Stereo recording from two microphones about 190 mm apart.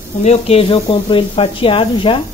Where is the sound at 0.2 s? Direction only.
35° left (ahead or behind).